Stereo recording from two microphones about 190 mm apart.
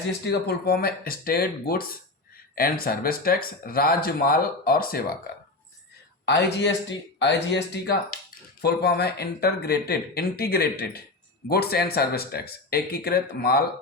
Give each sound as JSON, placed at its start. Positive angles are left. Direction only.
{"t": 0.3, "sound": "speech", "side_deg": 55}
{"t": 6.2, "sound": "speech", "side_deg": 65}